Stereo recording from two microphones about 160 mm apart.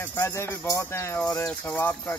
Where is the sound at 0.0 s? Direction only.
15° left (ahead or behind).